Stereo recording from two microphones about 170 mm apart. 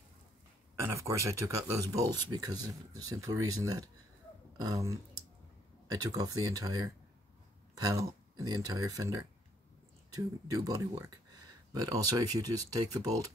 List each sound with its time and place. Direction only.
0.7 s speech: 15° right (ahead or behind)